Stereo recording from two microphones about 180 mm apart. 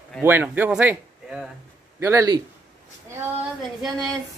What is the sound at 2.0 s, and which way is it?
Speech, 15° right (ahead or behind).